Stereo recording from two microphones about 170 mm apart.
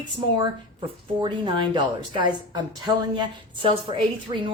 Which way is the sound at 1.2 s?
25° right (ahead or behind).